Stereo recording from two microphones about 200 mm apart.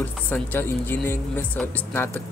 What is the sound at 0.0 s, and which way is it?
Speech, 10° left (ahead or behind).